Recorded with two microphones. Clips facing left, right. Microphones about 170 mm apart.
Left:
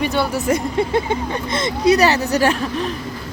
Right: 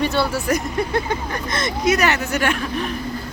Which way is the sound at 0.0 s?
15° left (ahead or behind).